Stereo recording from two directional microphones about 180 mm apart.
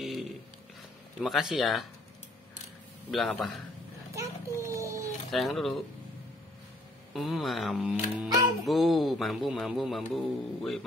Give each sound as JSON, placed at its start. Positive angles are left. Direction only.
{"t": 0.0, "sound": "a sound", "side_deg": 0}
{"t": 1.2, "sound": "a man's voice", "side_deg": 0}
{"t": 3.1, "sound": "a man's voice", "side_deg": 0}
{"t": 4.1, "sound": "dog", "side_deg": -15}
{"t": 5.3, "sound": "a man's voice", "side_deg": 0}
{"t": 7.2, "sound": "a man's voice", "side_deg": 0}